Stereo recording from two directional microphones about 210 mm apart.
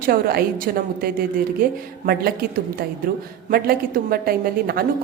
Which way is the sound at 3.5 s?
45° right (ahead or behind).